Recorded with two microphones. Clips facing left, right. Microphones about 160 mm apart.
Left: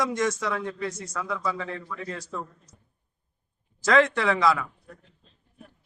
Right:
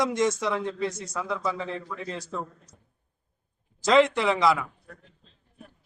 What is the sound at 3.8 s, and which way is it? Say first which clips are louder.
Speech: right 1 dB; 20° right (ahead or behind).